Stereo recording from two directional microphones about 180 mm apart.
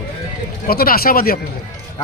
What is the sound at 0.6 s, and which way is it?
Speech, 55° left (ahead or behind).